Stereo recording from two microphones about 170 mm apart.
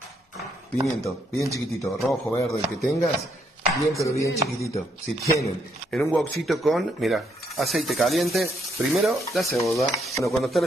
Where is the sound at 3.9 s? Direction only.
20° left (ahead or behind).